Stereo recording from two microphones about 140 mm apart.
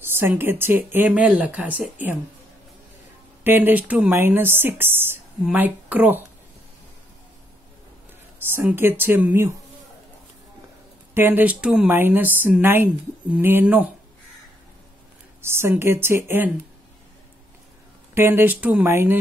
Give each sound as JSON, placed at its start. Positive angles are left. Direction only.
{"t": 0.0, "sound": "speech", "side_deg": -15}
{"t": 3.4, "sound": "speech", "side_deg": -15}
{"t": 8.5, "sound": "speech", "side_deg": -15}
{"t": 11.1, "sound": "speech", "side_deg": -15}
{"t": 15.4, "sound": "speech", "side_deg": -15}
{"t": 18.1, "sound": "speech", "side_deg": -15}